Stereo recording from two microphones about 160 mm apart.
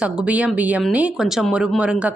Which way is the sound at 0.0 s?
5° right (ahead or behind).